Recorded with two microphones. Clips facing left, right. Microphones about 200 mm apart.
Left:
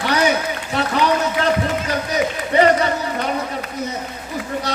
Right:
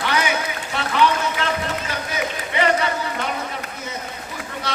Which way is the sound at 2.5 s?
40° left (ahead or behind).